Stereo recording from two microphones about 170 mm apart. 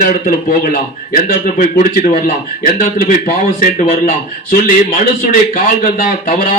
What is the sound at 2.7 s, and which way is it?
Speech, 55° left (ahead or behind).